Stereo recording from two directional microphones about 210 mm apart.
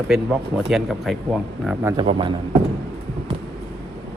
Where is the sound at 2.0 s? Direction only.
25° right (ahead or behind).